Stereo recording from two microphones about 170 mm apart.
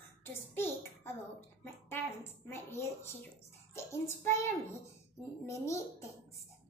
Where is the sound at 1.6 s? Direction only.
15° left (ahead or behind).